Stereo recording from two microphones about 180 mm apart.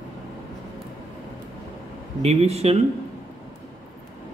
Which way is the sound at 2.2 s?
35° right (ahead or behind).